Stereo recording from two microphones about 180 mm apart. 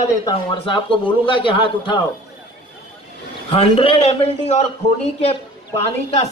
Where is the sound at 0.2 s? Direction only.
25° left (ahead or behind).